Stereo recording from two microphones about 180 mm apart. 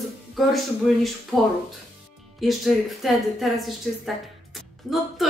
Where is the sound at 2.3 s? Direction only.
Centre (ahead or behind).